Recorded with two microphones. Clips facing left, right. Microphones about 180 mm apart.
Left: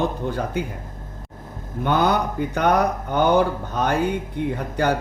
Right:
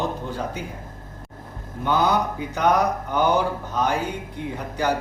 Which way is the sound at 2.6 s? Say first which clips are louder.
Even; 55° left (ahead or behind).